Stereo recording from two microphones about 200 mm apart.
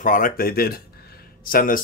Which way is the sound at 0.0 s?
40° left (ahead or behind).